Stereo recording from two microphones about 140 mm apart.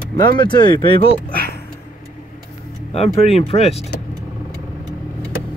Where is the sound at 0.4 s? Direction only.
35° left (ahead or behind).